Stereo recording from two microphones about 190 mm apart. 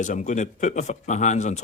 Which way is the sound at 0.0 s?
40° left (ahead or behind).